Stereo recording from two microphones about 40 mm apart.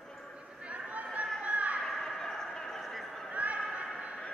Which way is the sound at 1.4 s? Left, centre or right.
Right.